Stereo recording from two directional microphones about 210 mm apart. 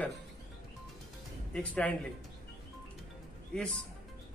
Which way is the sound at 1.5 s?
5° left (ahead or behind).